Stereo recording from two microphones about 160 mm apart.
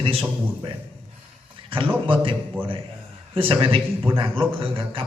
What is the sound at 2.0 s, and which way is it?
A man's voice, 30° right (ahead or behind).